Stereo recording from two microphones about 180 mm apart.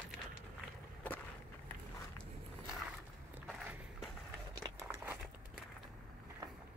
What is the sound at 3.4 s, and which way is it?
Walk, 5° right (ahead or behind).